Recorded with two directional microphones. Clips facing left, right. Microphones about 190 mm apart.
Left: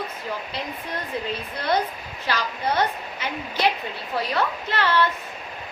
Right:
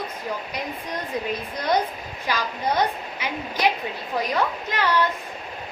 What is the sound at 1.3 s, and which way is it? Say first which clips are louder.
A woman's voice: right 1 dB; 15° right (ahead or behind).